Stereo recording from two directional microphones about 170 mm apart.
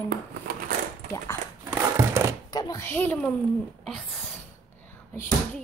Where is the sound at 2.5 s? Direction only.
20° left (ahead or behind).